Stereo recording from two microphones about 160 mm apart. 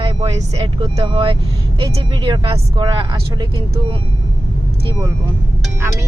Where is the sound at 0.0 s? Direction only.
35° right (ahead or behind).